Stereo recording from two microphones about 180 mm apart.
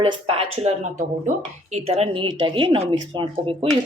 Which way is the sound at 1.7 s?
35° right (ahead or behind).